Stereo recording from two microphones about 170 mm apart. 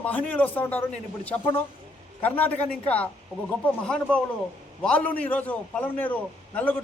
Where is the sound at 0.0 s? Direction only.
10° left (ahead or behind).